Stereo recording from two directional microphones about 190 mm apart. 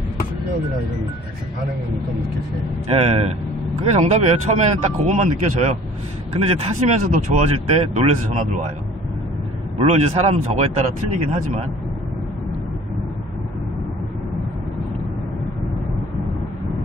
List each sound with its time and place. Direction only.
2.9 s speech: 35° right (ahead or behind)
9.8 s speech: 35° right (ahead or behind)